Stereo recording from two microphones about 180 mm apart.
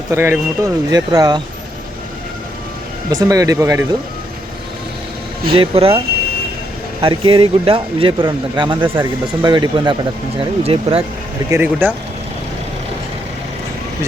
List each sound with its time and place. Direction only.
0.1 s speech: 15° right (ahead or behind)
3.1 s speech: 20° right (ahead or behind)
5.5 s speech: 30° right (ahead or behind)
7.0 s speech: 30° right (ahead or behind)
11.5 s speech: 10° right (ahead or behind)